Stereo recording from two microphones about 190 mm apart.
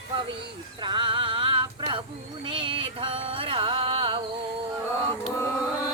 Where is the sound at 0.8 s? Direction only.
25° right (ahead or behind).